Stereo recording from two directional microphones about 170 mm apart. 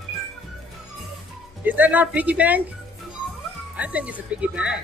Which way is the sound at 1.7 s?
10° right (ahead or behind).